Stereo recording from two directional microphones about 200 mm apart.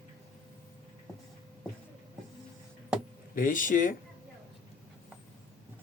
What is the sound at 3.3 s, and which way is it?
Speech, 40° left (ahead or behind).